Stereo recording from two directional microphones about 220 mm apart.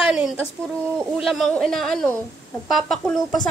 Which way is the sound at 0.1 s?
Centre (ahead or behind).